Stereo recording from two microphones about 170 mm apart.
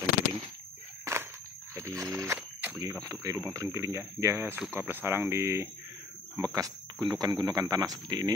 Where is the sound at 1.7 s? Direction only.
15° right (ahead or behind).